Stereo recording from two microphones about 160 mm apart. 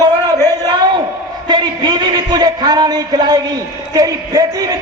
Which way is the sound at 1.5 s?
30° right (ahead or behind).